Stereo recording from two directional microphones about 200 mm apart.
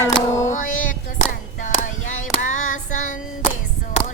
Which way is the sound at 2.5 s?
40° left (ahead or behind).